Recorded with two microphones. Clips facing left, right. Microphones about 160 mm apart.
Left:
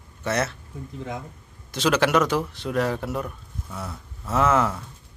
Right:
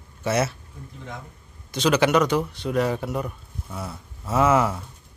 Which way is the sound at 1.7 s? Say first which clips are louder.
Right 1 dB; centre (ahead or behind).